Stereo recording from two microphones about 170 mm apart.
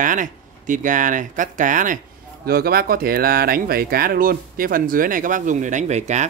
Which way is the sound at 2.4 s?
65° right (ahead or behind).